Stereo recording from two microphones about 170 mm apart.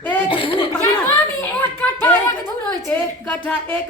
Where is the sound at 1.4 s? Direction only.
10° left (ahead or behind).